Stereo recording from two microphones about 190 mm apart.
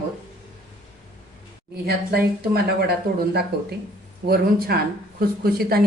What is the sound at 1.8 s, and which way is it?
Speech, 55° right (ahead or behind).